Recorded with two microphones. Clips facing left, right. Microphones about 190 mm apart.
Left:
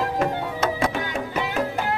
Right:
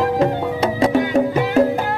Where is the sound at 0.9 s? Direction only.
45° right (ahead or behind).